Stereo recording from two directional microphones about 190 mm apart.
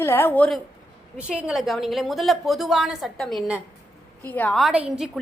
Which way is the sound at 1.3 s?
5° right (ahead or behind).